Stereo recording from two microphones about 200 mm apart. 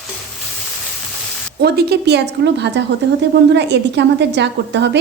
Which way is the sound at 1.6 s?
55° right (ahead or behind).